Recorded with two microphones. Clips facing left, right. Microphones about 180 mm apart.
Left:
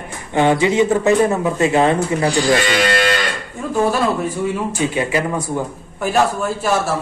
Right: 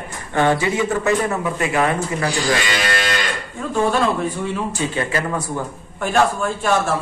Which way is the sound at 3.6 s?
10° left (ahead or behind).